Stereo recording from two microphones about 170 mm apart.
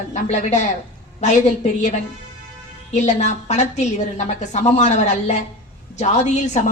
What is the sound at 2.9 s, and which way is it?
A woman's voice, 40° left (ahead or behind).